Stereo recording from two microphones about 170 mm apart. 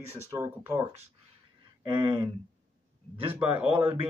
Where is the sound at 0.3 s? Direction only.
20° right (ahead or behind).